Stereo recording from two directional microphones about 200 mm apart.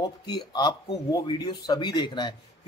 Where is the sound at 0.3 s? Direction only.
20° left (ahead or behind).